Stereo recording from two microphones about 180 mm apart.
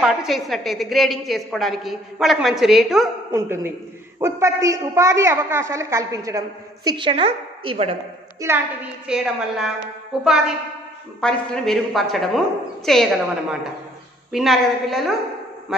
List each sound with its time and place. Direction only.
0.0 s a woman's voice: centre (ahead or behind)
3.3 s a woman's voice: 15° right (ahead or behind); by 7.9 s 35° right (ahead or behind)
8.4 s a woman's voice: 15° right (ahead or behind)
9.0 s a woman's voice: 5° right (ahead or behind)